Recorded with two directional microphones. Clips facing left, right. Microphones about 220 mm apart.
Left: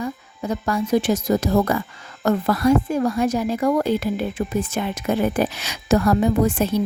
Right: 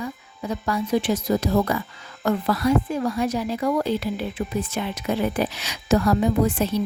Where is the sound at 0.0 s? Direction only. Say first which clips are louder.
Left 4 dB; 45° left (ahead or behind).